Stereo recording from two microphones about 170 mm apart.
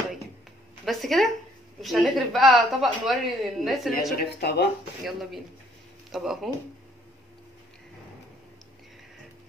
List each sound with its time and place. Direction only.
0.8 s a woman's voice: centre (ahead or behind)
4.4 s speech: 75° left (ahead or behind)
5.0 s a woman's voice: centre (ahead or behind)